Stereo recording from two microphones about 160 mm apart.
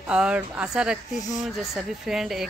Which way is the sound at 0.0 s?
5° right (ahead or behind).